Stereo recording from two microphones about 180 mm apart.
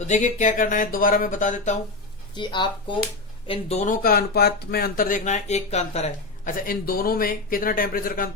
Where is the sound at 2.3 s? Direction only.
25° left (ahead or behind).